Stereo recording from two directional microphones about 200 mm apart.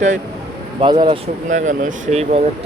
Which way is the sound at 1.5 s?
40° right (ahead or behind).